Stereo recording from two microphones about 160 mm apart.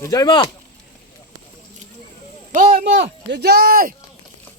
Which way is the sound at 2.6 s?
75° right (ahead or behind).